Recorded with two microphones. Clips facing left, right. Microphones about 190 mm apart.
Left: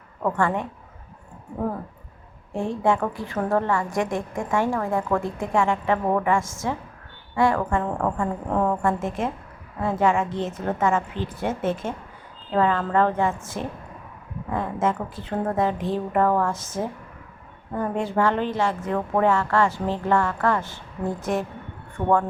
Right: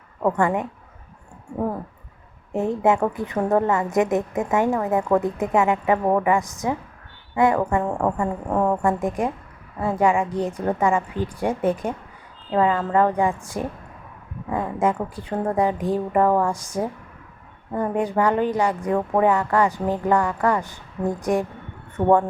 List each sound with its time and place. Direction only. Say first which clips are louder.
0.2 s a woman's voice: right 3 dB; 15° right (ahead or behind)
2.5 s a woman's voice: right 3 dB; 20° right (ahead or behind)